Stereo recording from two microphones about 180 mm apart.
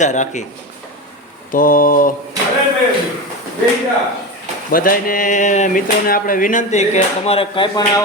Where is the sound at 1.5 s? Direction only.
50° left (ahead or behind).